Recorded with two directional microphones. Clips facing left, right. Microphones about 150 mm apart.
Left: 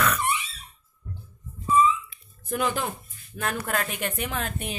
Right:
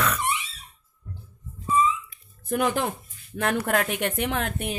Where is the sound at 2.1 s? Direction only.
55° right (ahead or behind).